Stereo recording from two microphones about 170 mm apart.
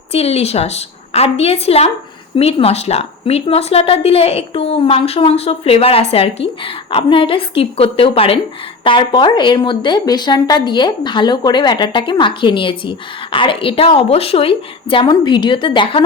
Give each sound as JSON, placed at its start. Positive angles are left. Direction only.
{"t": 0.1, "sound": "a woman's voice", "side_deg": 35}